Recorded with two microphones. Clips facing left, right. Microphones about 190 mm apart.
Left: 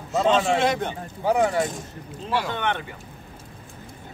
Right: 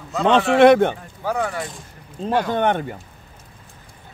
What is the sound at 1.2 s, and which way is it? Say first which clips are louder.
Speech: left 3 dB; 20° left (ahead or behind).